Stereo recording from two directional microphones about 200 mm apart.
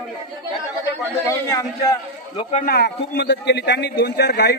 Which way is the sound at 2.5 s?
45° left (ahead or behind).